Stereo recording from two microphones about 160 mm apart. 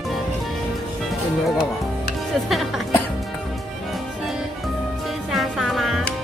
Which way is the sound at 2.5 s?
Centre (ahead or behind).